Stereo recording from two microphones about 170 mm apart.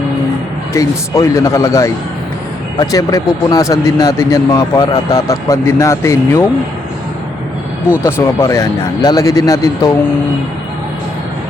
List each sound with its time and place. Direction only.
0.7 s speech: 20° left (ahead or behind)
8.0 s speech: 15° left (ahead or behind)